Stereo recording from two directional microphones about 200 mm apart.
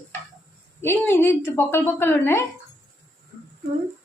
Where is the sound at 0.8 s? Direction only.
10° left (ahead or behind).